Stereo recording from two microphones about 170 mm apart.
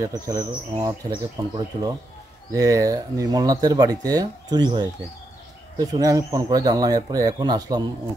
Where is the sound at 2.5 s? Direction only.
20° right (ahead or behind).